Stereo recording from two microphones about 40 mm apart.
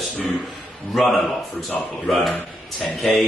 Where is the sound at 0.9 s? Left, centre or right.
Centre.